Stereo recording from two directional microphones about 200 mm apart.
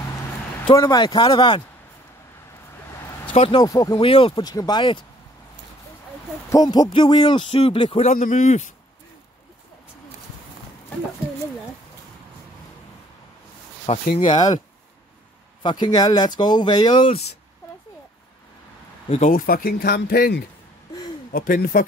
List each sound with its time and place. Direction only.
0.7 s a man's voice: 20° left (ahead or behind)
3.3 s a man's voice: 25° left (ahead or behind)
6.5 s a man's voice: 20° left (ahead or behind); by 8.7 s 40° left (ahead or behind)
14.1 s a man's voice: 25° left (ahead or behind)
15.6 s a man's voice: 20° left (ahead or behind)
19.0 s speech: 35° left (ahead or behind)